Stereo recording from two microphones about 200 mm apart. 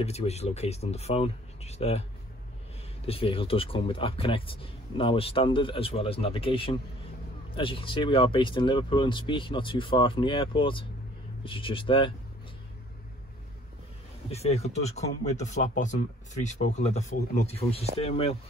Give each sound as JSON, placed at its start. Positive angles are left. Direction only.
{"t": 0.0, "sound": "speech", "side_deg": 30}
{"t": 3.1, "sound": "speech", "side_deg": 25}
{"t": 14.3, "sound": "speech", "side_deg": 30}